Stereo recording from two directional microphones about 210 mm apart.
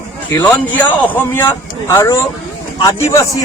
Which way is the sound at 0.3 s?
10° left (ahead or behind).